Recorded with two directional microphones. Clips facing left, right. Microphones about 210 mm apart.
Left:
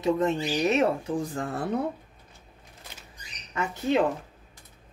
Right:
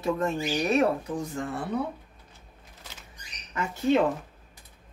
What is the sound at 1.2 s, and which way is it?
Speech, 35° left (ahead or behind).